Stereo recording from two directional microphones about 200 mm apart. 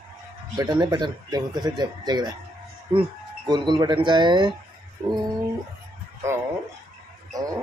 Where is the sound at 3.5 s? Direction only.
20° right (ahead or behind).